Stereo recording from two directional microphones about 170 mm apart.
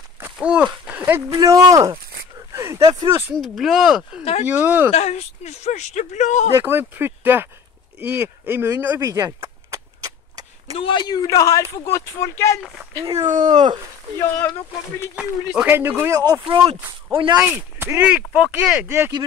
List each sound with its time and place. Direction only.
0.2 s walk: 5° right (ahead or behind)
0.8 s speech: 10° right (ahead or behind)
3.3 s speech: centre (ahead or behind)
4.2 s speech: 40° left (ahead or behind)
4.5 s speech: 10° right (ahead or behind)
4.9 s speech: 40° left (ahead or behind)
6.6 s speech: 10° right (ahead or behind)
8.0 s a sound: 10° right (ahead or behind)
10.8 s a man's voice: 30° left (ahead or behind)
13.0 s speech: 20° right (ahead or behind)
15.1 s speech: 10° right (ahead or behind); by 17.4 s 30° right (ahead or behind)
17.4 s speech: 15° right (ahead or behind)